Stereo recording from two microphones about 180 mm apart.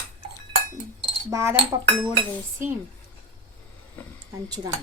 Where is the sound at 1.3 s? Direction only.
15° right (ahead or behind).